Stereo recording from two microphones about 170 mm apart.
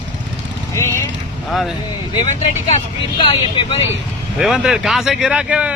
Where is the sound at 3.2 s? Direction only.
30° left (ahead or behind).